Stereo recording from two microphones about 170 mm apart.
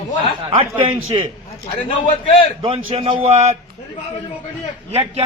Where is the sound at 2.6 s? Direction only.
35° right (ahead or behind).